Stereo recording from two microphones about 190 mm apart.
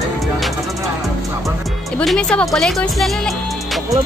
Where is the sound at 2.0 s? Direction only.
5° left (ahead or behind).